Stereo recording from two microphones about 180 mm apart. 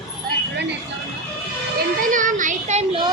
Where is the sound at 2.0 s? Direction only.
45° right (ahead or behind).